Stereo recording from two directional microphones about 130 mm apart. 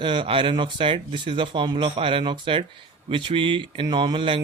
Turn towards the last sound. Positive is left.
turn(degrees=-40)  # may be behind; listen again after turning